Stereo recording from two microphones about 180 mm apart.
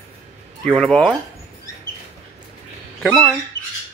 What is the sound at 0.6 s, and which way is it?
Speech, 5° left (ahead or behind).